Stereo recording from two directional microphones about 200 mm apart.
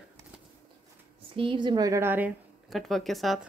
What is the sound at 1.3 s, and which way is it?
A woman's voice, 25° right (ahead or behind).